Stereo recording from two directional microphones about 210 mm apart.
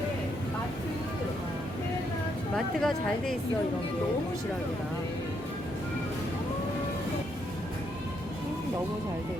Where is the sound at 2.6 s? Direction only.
Centre (ahead or behind).